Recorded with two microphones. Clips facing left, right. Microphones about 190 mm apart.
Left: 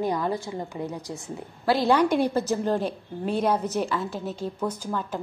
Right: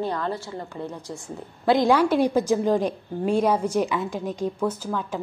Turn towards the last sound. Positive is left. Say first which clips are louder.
# right 2 dB
turn(degrees=0)  # may be behind; listen again after turning